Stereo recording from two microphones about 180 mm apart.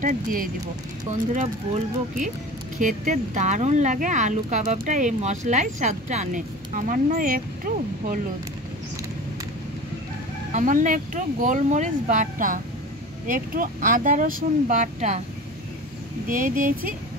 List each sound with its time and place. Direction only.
0.0 s speech: 50° right (ahead or behind)
2.8 s speech: 45° right (ahead or behind)
10.5 s speech: 45° right (ahead or behind)
16.3 s speech: 50° right (ahead or behind)